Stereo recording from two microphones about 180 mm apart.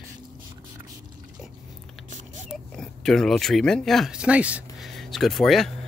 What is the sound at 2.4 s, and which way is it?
Speech, 5° left (ahead or behind).